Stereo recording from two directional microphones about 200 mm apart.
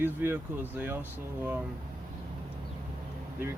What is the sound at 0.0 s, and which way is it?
Speech, 10° right (ahead or behind).